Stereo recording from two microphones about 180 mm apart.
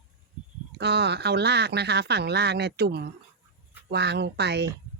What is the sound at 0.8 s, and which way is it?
Speech, 70° right (ahead or behind).